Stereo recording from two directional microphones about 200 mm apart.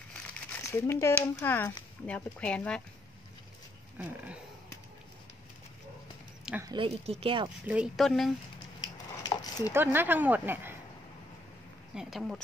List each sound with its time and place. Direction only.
0.7 s speech: 15° left (ahead or behind)
6.4 s speech: 10° right (ahead or behind)
6.7 s speech: 30° right (ahead or behind)
7.6 s speech: 5° right (ahead or behind)
8.8 s a sound: 20° left (ahead or behind)
9.7 s speech: 10° right (ahead or behind)
11.9 s speech: centre (ahead or behind)